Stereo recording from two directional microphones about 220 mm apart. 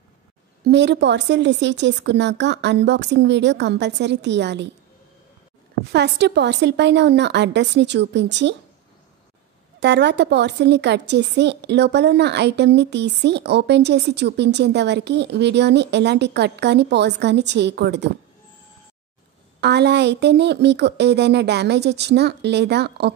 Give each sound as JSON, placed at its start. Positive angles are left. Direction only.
{"t": 0.7, "sound": "a woman's voice", "side_deg": -50}
{"t": 5.9, "sound": "a woman's voice", "side_deg": -50}
{"t": 9.8, "sound": "a woman's voice", "side_deg": -50}
{"t": 19.6, "sound": "a woman's voice", "side_deg": -50}